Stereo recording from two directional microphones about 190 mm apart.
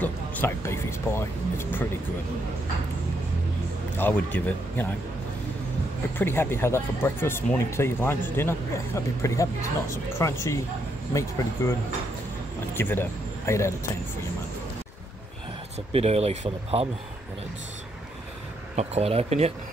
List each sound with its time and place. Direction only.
0.0 s speech: 10° left (ahead or behind)
4.0 s speech: 10° left (ahead or behind)
6.1 s speech: 10° left (ahead or behind)
15.9 s speech: 35° right (ahead or behind)
18.8 s speech: 35° right (ahead or behind)